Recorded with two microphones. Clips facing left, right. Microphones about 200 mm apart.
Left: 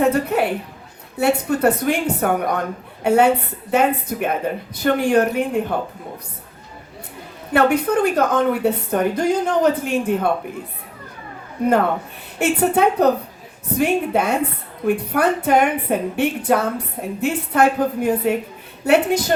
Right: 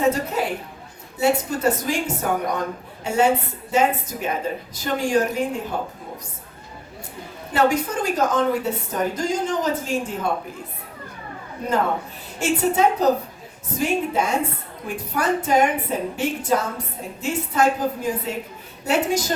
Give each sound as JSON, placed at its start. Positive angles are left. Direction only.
{"t": 0.0, "sound": "a woman's voice", "side_deg": 60}
{"t": 7.5, "sound": "a woman's voice", "side_deg": 60}
{"t": 12.4, "sound": "a woman's voice", "side_deg": 60}